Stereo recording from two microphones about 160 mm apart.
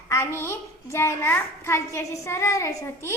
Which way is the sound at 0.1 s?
15° left (ahead or behind).